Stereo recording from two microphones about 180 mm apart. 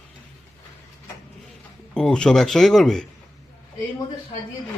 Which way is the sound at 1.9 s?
5° left (ahead or behind).